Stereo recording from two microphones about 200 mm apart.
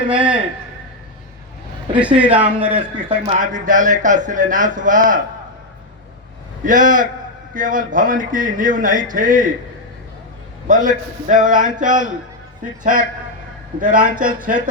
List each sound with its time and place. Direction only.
0.1 s a sound: 5° right (ahead or behind)
2.0 s a man's voice: 5° right (ahead or behind)
2.6 s speech: 30° right (ahead or behind)
6.7 s speech: 40° right (ahead or behind)
10.7 s speech: 40° right (ahead or behind)